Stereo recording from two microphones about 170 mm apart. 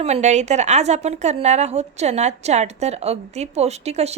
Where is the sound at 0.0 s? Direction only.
40° right (ahead or behind).